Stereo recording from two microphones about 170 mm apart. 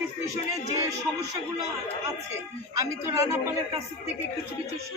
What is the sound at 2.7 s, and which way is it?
Speech, 15° right (ahead or behind).